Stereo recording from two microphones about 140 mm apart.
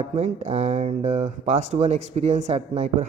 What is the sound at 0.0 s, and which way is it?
Speech, 50° right (ahead or behind).